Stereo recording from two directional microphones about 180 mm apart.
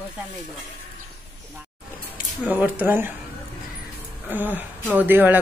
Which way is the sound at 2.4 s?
10° right (ahead or behind).